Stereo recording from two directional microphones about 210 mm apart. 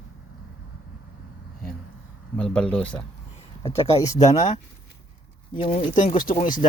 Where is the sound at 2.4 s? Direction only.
5° left (ahead or behind).